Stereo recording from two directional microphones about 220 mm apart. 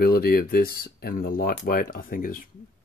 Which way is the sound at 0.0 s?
40° left (ahead or behind).